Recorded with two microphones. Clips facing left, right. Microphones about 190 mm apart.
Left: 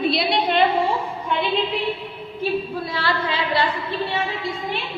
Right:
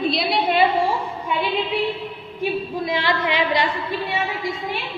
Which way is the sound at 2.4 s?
15° right (ahead or behind).